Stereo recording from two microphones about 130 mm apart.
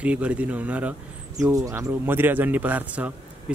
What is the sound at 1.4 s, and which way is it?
Speech, 25° right (ahead or behind).